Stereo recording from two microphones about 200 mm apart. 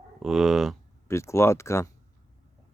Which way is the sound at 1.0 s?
15° left (ahead or behind).